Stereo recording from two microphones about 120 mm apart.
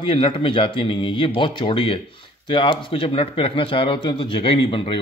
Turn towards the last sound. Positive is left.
turn(degrees=50)  # may be behind; listen again after turning